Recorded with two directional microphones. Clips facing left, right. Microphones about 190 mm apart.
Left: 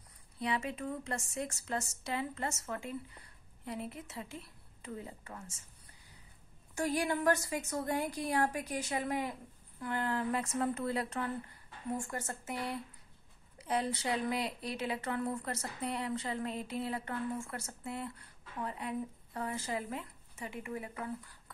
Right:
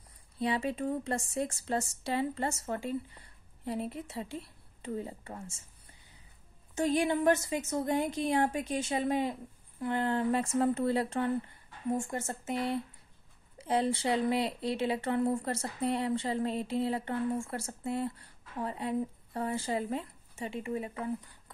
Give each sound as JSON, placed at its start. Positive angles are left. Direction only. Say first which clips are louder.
{"t": 0.4, "sound": "a woman's voice", "louder": "right 5 dB", "side_deg": -30}
{"t": 6.7, "sound": "a woman's voice", "louder": "right 5 dB", "side_deg": -20}